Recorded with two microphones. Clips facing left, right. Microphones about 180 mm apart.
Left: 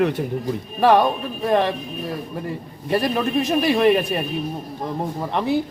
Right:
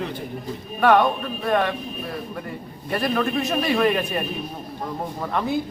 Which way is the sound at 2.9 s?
35° left (ahead or behind).